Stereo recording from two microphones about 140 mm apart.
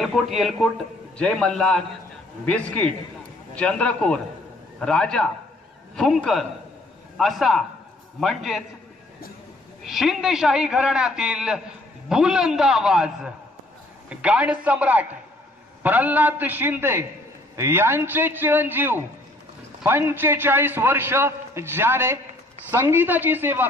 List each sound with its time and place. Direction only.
0.0 s a man's voice: centre (ahead or behind)
9.8 s a man's voice: centre (ahead or behind)